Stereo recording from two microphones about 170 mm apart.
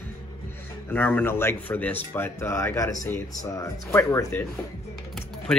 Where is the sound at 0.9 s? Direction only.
10° left (ahead or behind).